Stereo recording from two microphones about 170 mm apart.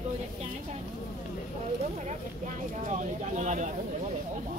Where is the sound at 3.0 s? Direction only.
45° right (ahead or behind).